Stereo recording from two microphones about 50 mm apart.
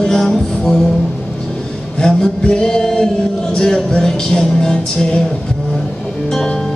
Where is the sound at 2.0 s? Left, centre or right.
Centre.